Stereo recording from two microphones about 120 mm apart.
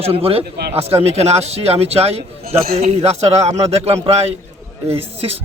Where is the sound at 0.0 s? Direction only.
55° right (ahead or behind).